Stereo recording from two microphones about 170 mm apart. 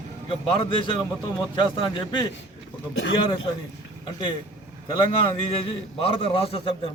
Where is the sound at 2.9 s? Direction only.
90° left.